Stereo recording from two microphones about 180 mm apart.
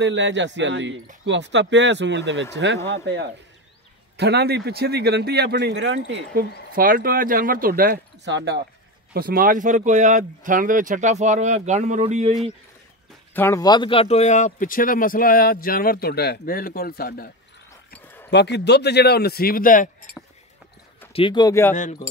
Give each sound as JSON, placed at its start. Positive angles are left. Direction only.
{"t": 0.0, "sound": "speech", "side_deg": -85}
{"t": 2.9, "sound": "speech", "side_deg": -90}
{"t": 4.2, "sound": "speech", "side_deg": -65}
{"t": 6.7, "sound": "speech", "side_deg": -50}
{"t": 8.3, "sound": "speech", "side_deg": -80}
{"t": 9.1, "sound": "speech", "side_deg": -55}
{"t": 13.3, "sound": "speech", "side_deg": 15}
{"t": 17.9, "sound": "a sound", "side_deg": 10}
{"t": 18.3, "sound": "speech", "side_deg": 70}
{"t": 21.1, "sound": "a man's voice", "side_deg": 30}